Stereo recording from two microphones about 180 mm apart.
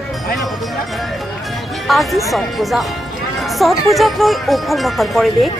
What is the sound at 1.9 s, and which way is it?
Speech, centre (ahead or behind).